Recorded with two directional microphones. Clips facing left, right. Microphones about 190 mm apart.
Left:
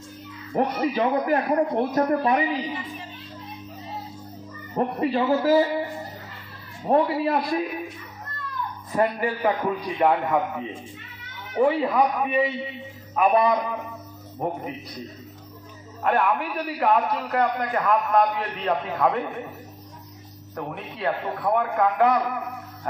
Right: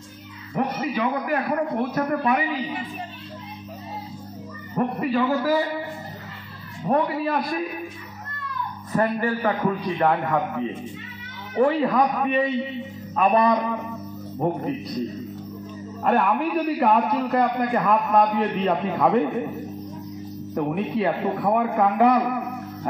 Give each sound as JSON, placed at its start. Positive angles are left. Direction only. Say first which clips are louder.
{"t": 0.6, "sound": "speech", "louder": "left 2 dB", "side_deg": 35}
{"t": 4.7, "sound": "a man's voice", "louder": "even", "side_deg": 25}
{"t": 6.9, "sound": "a man's voice", "louder": "left 1 dB", "side_deg": 15}
{"t": 8.9, "sound": "a man's voice", "louder": "right 1 dB", "side_deg": 15}
{"t": 16.0, "sound": "a man's voice", "louder": "right 2 dB", "side_deg": 0}
{"t": 20.5, "sound": "a man's voice", "louder": "right 9 dB", "side_deg": -15}